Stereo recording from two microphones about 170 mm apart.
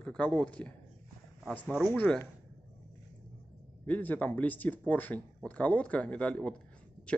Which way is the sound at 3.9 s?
10° left (ahead or behind).